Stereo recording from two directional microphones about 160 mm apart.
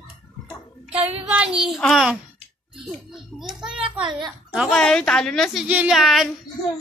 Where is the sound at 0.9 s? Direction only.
10° right (ahead or behind).